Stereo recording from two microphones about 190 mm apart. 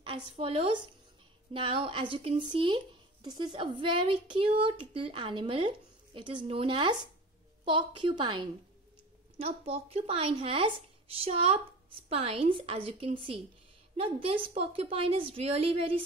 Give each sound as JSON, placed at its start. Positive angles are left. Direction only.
{"t": 0.0, "sound": "speech", "side_deg": -30}